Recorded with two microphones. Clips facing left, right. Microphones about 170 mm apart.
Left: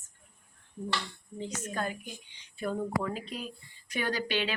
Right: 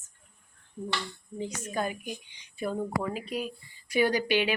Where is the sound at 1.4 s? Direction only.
10° right (ahead or behind).